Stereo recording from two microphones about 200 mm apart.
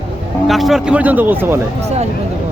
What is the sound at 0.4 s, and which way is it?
Speech, centre (ahead or behind).